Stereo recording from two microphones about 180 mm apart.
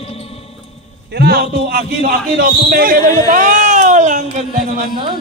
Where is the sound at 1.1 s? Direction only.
60° right (ahead or behind); by 4.3 s 45° right (ahead or behind).